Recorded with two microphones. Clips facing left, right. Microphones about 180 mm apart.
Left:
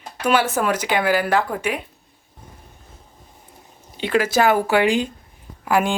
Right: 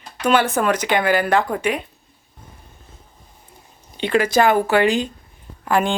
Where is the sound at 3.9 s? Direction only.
5° left (ahead or behind).